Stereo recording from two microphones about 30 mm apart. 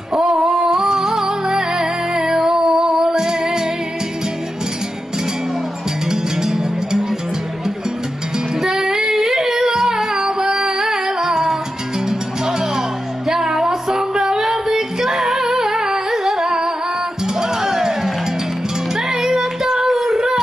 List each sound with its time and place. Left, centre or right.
0.1 s a sound: centre
0.4 s humming: centre
1.5 s music: right
6.0 s music: centre
8.5 s singing: centre
10.8 s music: centre